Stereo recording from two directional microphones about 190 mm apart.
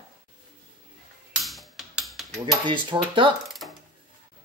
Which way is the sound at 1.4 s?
Centre (ahead or behind).